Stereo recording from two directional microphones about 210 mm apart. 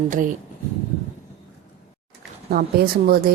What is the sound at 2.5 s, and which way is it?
Speech, 45° right (ahead or behind).